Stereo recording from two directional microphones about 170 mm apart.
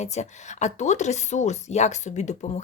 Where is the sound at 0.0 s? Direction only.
40° left (ahead or behind).